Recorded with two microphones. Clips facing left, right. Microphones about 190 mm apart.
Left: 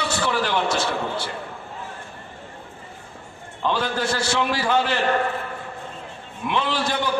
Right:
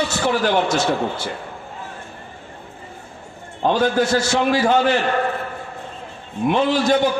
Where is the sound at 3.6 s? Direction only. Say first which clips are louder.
Right 6 dB; 45° right (ahead or behind).